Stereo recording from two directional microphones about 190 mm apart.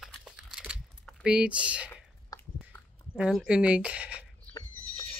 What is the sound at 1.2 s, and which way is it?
Speech, 5° right (ahead or behind).